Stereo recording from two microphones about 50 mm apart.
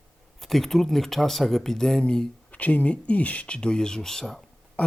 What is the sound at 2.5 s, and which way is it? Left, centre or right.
Speech, left.